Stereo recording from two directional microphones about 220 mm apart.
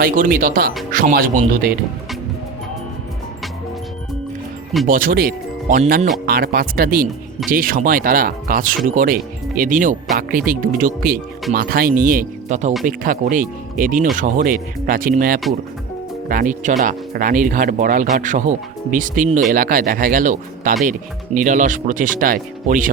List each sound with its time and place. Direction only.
0.0 s speech: 40° right (ahead or behind)
4.9 s speech: 40° right (ahead or behind)
6.2 s speech: 45° right (ahead or behind)